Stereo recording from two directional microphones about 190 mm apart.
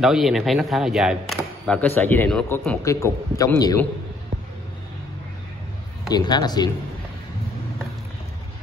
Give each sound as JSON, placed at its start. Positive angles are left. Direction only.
{"t": 0.0, "sound": "a man's voice", "side_deg": 0}
{"t": 6.0, "sound": "speech", "side_deg": 20}